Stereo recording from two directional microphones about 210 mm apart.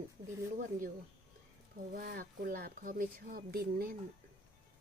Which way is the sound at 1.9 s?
45° right (ahead or behind).